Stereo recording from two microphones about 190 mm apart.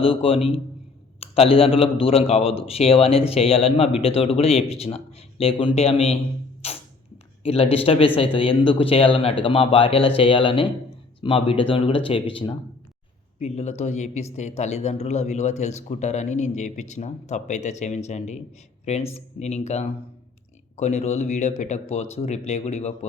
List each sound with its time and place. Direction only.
0.0 s speech: 30° left (ahead or behind)
6.6 s a sound: 30° left (ahead or behind)
7.4 s speech: 30° left (ahead or behind)
13.4 s speech: 35° left (ahead or behind)